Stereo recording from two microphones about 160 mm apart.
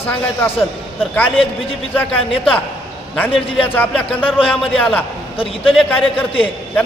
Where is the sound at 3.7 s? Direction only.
10° left (ahead or behind).